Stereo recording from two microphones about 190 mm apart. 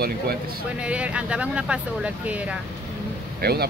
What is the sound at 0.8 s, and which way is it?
Speech, 5° right (ahead or behind).